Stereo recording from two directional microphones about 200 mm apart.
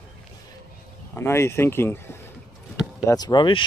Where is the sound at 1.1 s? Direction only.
10° left (ahead or behind).